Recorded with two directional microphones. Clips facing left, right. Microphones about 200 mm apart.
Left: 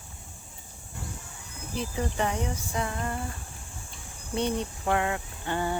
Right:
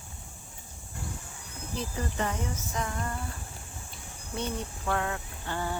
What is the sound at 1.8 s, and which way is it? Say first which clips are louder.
Speech: left 3 dB; 15° left (ahead or behind).